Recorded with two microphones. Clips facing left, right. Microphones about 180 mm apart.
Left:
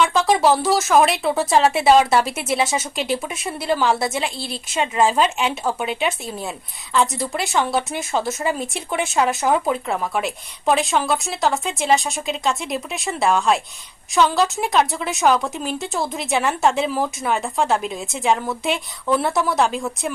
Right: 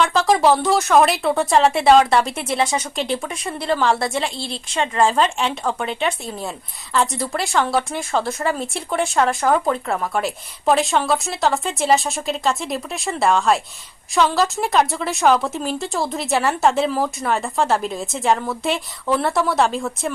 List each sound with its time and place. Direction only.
0.0 s speech: centre (ahead or behind)
8.2 s speech: 20° left (ahead or behind)
8.5 s speech: 5° left (ahead or behind)